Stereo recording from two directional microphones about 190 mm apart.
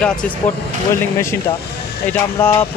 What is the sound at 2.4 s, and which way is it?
Speech, 10° left (ahead or behind).